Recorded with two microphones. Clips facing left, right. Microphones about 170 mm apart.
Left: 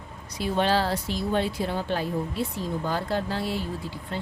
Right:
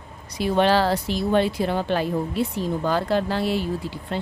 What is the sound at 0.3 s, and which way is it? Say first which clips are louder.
Speech: right 5 dB; 70° right (ahead or behind).